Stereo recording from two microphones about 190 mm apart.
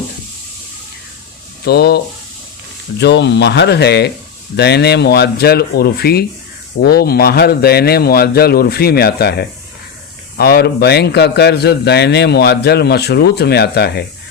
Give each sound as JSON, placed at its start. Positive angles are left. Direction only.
{"t": 1.6, "sound": "a man's voice", "side_deg": 55}
{"t": 3.0, "sound": "a man's voice", "side_deg": 65}